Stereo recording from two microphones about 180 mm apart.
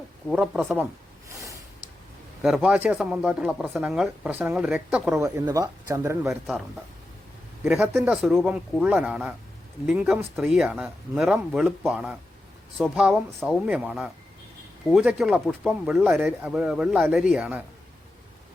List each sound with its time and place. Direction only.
0.3 s speech: centre (ahead or behind)
1.3 s snort: 20° right (ahead or behind)
2.4 s speech: 5° right (ahead or behind)
5.2 s speech: 15° right (ahead or behind)
7.6 s speech: 10° right (ahead or behind)